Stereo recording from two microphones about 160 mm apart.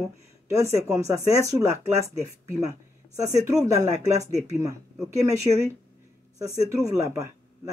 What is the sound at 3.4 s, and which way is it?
Speech, 20° right (ahead or behind).